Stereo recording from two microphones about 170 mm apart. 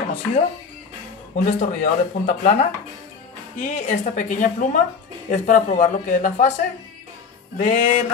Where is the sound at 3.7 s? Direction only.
45° left (ahead or behind).